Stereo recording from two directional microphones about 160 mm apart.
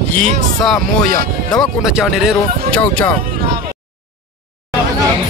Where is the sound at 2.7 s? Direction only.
10° left (ahead or behind).